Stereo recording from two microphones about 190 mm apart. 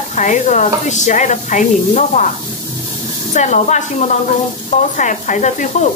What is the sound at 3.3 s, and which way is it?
Speech, 40° left (ahead or behind).